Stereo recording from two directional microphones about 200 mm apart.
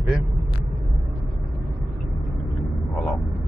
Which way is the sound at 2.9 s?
5° left (ahead or behind).